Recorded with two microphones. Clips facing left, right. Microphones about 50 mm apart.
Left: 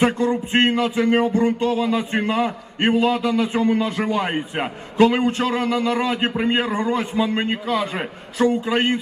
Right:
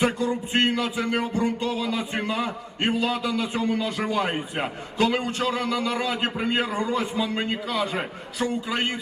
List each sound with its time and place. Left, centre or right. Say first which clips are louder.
0.0 s music: left 5 dB; left
3.2 s a man's voice: left 6 dB; left
4.2 s a man's voice: left 3 dB; centre
4.9 s a man's voice: left 7 dB; left
8.6 s music: left 7 dB; left